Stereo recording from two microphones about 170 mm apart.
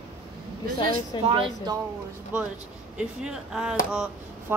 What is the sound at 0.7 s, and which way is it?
Speech, 25° left (ahead or behind).